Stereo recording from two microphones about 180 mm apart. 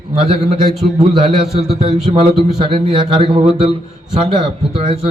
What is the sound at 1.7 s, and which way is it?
A man's voice, 35° right (ahead or behind).